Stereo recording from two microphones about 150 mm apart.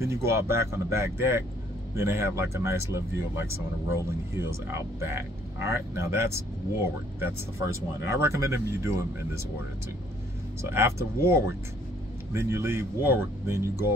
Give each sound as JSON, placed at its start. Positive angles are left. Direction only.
{"t": 0.0, "sound": "speech", "side_deg": -20}
{"t": 10.6, "sound": "speech", "side_deg": -15}